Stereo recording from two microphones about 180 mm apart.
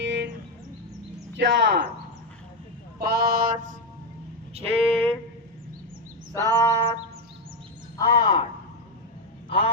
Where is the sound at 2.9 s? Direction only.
60° right (ahead or behind).